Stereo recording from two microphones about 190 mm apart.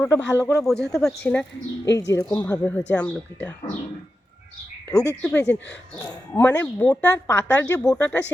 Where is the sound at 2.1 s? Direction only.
20° left (ahead or behind).